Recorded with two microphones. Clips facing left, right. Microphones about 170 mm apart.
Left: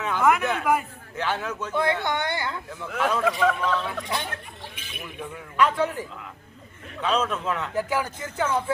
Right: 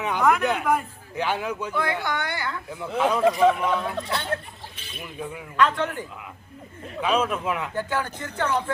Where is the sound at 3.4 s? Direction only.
25° right (ahead or behind).